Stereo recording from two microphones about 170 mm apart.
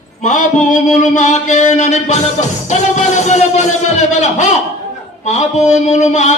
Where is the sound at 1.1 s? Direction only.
45° left (ahead or behind).